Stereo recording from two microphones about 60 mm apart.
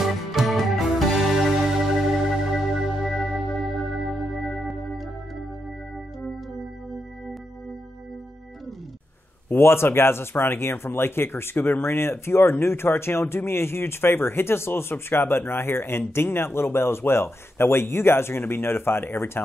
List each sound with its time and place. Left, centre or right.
0.0 s music: centre
9.5 s speech: left